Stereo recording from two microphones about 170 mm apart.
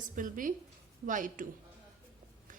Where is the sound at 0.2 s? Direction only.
50° right (ahead or behind).